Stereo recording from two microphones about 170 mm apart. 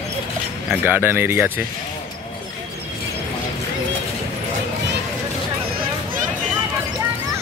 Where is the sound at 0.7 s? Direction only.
10° right (ahead or behind).